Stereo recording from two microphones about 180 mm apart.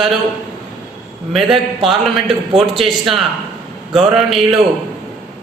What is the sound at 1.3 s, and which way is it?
Speech, centre (ahead or behind).